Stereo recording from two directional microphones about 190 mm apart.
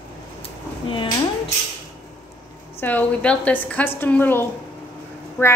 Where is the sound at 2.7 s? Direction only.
10° left (ahead or behind).